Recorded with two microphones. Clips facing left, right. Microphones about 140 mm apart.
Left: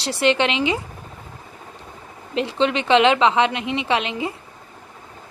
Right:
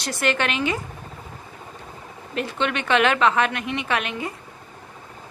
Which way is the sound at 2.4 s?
30° left (ahead or behind).